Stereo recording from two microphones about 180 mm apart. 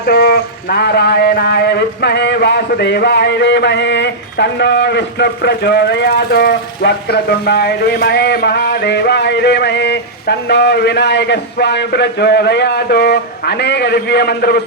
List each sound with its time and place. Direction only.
0.0 s speech: 60° left (ahead or behind)